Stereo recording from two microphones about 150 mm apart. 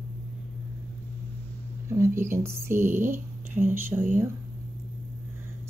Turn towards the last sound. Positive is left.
turn(degrees=-15)  # may be behind; listen again after turning